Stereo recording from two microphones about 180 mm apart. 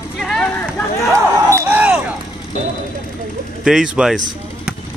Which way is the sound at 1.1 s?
15° right (ahead or behind).